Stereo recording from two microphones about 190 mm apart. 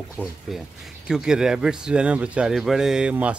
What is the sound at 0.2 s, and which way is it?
Speech, 10° left (ahead or behind).